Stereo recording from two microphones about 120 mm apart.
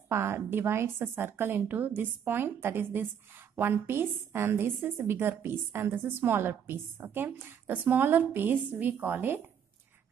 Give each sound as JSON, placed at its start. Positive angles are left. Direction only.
{"t": 0.1, "sound": "a woman's voice", "side_deg": -20}